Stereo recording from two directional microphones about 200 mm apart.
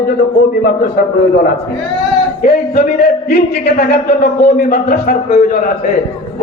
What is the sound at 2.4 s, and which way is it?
A man's voice, 55° left (ahead or behind).